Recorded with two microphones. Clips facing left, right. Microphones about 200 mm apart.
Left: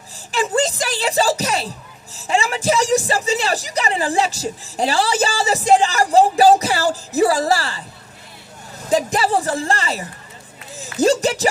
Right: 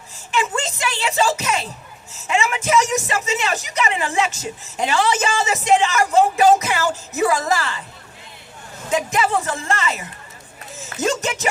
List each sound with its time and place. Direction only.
0.3 s speech: 35° left (ahead or behind)
8.9 s speech: 35° left (ahead or behind)